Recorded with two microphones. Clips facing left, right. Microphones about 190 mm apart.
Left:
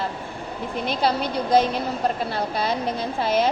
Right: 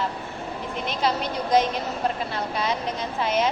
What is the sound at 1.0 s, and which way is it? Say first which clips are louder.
Speech: left 2 dB; 30° left (ahead or behind).